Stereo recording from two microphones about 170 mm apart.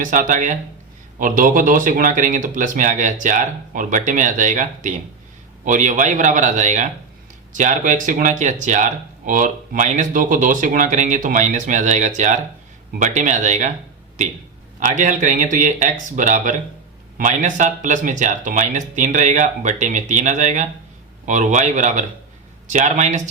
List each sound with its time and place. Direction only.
0.0 s speech: 50° right (ahead or behind)
14.8 s speech: 45° right (ahead or behind)